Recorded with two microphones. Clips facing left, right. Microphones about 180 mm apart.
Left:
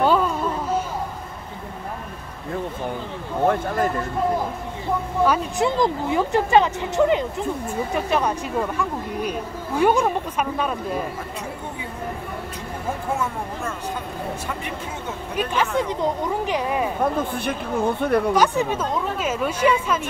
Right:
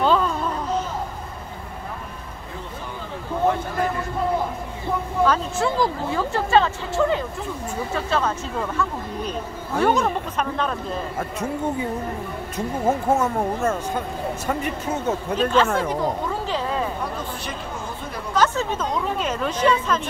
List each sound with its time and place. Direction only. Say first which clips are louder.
0.0 s a sound: left 1 dB; 10° left (ahead or behind)
3.4 s a sound: left 2 dB; 45° left (ahead or behind)
5.2 s speech: even; 10° left (ahead or behind)
12.5 s speech: right 10 dB; 45° right (ahead or behind)
15.3 s speech: right 2 dB; 15° left (ahead or behind)
17.0 s speech: left 7 dB; 55° left (ahead or behind)
18.3 s speech: left 2 dB; 15° left (ahead or behind)